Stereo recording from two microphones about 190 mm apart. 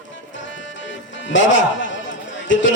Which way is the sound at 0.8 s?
75° left (ahead or behind).